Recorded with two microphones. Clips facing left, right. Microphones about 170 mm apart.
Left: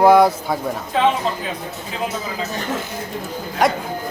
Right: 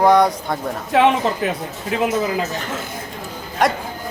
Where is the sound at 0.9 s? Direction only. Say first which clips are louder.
Right 3 dB; 70° right (ahead or behind).